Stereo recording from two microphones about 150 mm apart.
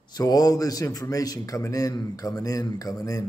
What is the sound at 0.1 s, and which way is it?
Speech, 25° left (ahead or behind).